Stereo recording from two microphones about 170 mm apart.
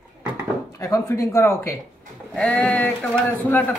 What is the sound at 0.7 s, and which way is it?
Speech, 20° left (ahead or behind).